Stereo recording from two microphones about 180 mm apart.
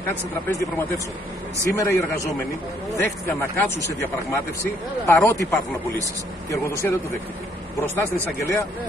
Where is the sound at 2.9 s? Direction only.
15° left (ahead or behind).